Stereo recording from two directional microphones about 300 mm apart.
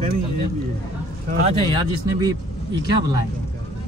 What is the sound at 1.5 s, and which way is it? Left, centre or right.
Speech, centre.